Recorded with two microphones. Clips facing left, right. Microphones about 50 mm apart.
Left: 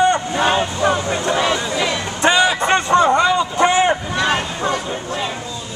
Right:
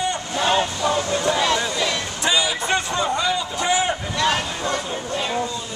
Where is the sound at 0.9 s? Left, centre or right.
Left.